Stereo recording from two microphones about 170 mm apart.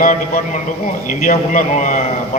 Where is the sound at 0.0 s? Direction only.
50° left (ahead or behind).